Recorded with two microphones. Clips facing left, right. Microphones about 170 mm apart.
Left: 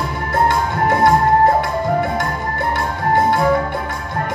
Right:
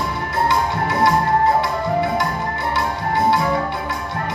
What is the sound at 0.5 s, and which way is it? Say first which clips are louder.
Music: left 3 dB; 50° left (ahead or behind).